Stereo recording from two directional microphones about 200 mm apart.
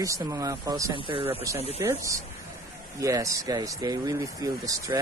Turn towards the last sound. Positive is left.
turn(degrees=-15)  # may be behind; listen again after turning